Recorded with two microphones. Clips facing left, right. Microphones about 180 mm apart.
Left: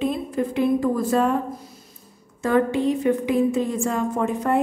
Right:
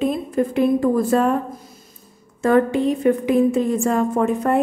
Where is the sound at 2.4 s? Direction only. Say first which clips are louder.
Right 3 dB; 50° right (ahead or behind).